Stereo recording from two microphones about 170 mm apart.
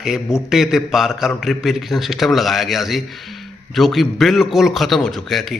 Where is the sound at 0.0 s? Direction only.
Centre (ahead or behind).